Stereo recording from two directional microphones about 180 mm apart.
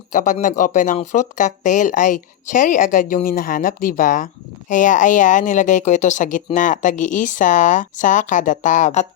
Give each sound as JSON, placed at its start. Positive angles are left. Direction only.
{"t": 0.1, "sound": "speech", "side_deg": 45}